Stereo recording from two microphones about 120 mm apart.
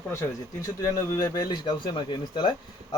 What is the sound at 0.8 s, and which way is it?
Speech, 25° left (ahead or behind).